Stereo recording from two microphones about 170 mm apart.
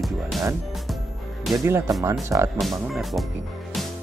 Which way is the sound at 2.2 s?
15° right (ahead or behind).